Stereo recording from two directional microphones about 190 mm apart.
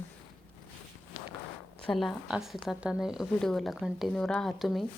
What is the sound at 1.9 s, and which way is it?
Speech, centre (ahead or behind).